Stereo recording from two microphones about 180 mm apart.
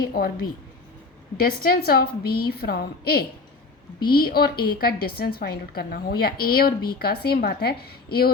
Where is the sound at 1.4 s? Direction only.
55° left (ahead or behind).